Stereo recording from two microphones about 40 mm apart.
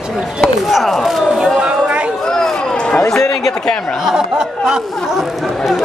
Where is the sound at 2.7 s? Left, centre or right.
Left.